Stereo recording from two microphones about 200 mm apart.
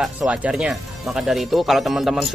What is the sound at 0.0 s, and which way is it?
Speech, 5° right (ahead or behind).